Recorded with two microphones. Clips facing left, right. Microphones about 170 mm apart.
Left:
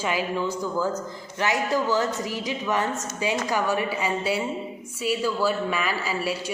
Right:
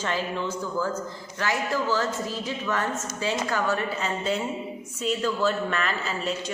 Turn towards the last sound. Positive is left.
turn(degrees=10)  # may be behind; listen again after turning